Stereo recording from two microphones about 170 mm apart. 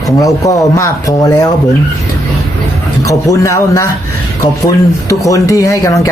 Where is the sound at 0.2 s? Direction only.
20° left (ahead or behind).